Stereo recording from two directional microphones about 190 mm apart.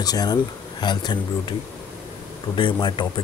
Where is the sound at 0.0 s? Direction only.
20° left (ahead or behind).